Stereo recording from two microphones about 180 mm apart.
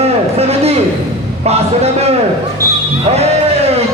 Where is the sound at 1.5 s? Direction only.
35° right (ahead or behind).